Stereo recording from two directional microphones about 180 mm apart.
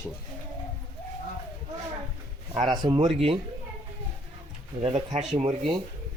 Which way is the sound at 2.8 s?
20° right (ahead or behind).